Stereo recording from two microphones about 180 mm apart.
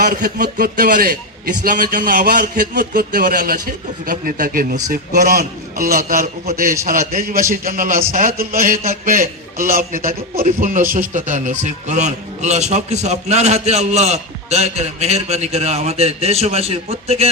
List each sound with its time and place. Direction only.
0.0 s a man's voice: 55° right (ahead or behind); by 17.2 s 35° right (ahead or behind)